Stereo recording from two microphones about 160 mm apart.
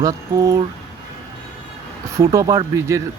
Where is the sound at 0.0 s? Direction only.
20° right (ahead or behind).